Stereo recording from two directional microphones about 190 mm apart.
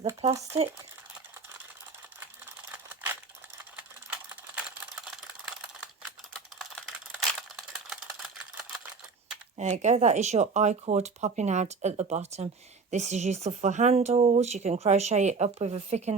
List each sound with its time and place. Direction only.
2.7 s a sound: 10° right (ahead or behind)
4.3 s computer keyboard: 5° right (ahead or behind)
9.6 s a woman's voice: 35° right (ahead or behind)